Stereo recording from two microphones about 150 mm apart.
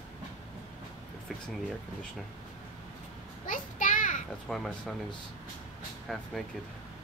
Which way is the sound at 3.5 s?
60° left (ahead or behind).